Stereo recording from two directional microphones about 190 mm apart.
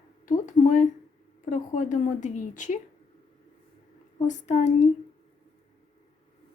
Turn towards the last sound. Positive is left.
turn(degrees=40)  # may be behind; listen again after turning